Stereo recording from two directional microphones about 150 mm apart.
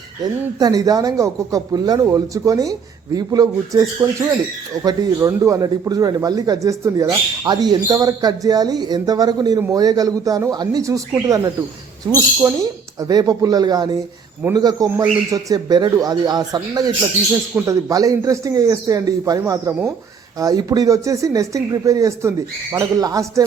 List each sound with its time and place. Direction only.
0.6 s a man's voice: 25° right (ahead or behind)